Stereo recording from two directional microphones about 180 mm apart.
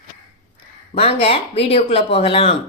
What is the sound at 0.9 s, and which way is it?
Speech, 35° left (ahead or behind).